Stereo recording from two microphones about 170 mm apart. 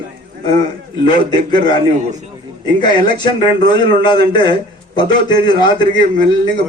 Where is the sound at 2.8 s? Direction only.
25° left (ahead or behind).